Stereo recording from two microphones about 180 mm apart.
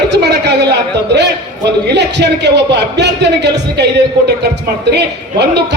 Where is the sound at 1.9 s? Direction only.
70° right (ahead or behind).